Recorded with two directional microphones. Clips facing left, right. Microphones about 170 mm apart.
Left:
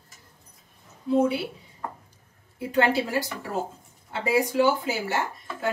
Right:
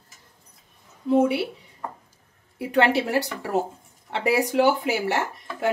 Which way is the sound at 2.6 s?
70° right (ahead or behind).